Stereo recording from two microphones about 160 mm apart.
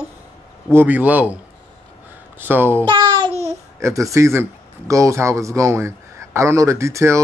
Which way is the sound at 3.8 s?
20° right (ahead or behind).